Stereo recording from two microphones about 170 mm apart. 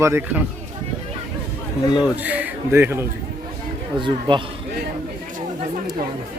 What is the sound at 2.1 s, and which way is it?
Speech, 10° right (ahead or behind).